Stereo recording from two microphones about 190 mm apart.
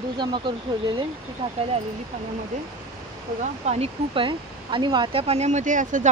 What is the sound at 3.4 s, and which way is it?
Speech, 35° right (ahead or behind).